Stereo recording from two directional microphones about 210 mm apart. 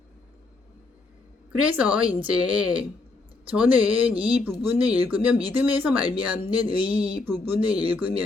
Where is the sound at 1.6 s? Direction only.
5° right (ahead or behind).